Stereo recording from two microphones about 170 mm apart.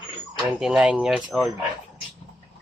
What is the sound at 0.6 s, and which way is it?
Speech, 5° right (ahead or behind).